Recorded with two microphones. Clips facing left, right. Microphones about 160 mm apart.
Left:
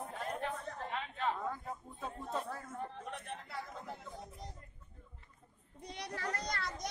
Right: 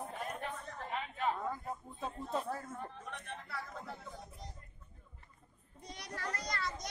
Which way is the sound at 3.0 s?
35° left (ahead or behind).